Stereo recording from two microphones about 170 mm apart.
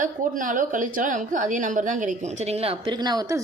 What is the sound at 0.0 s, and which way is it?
A woman's voice, 50° right (ahead or behind).